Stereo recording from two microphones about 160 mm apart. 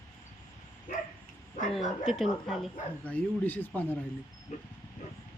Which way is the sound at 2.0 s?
Centre (ahead or behind).